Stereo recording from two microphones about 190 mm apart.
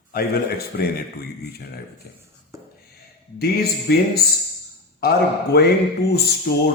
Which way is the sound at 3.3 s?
55° left (ahead or behind).